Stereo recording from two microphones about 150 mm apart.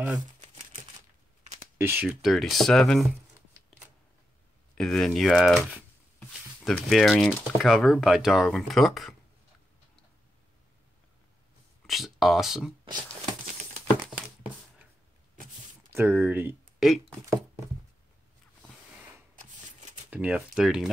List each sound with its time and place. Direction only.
1.8 s speech: 15° right (ahead or behind)
2.0 s speech: 5° right (ahead or behind)
4.7 s speech: 5° left (ahead or behind)
6.1 s a sound: 5° left (ahead or behind)
7.5 s speech: centre (ahead or behind)
11.8 s speech: centre (ahead or behind)
15.9 s speech: 15° right (ahead or behind)
16.8 s speech: centre (ahead or behind)
20.1 s speech: 10° right (ahead or behind)